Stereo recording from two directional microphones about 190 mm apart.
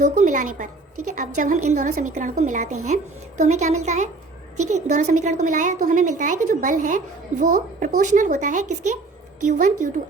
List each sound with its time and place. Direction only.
0.0 s a woman's voice: 40° right (ahead or behind)